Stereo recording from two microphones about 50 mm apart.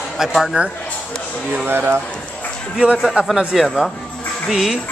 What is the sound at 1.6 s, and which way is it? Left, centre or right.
Speech, right.